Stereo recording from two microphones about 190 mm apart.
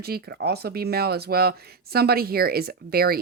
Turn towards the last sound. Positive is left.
turn(degrees=-50)  # may be behind; listen again after turning